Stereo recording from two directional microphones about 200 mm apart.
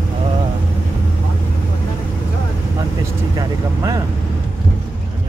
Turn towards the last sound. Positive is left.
turn(degrees=-20)  # may be behind; listen again after turning